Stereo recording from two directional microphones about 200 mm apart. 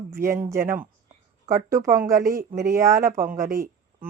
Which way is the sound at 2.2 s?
45° right (ahead or behind).